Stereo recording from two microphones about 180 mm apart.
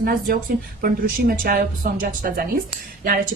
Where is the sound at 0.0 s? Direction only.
55° right (ahead or behind).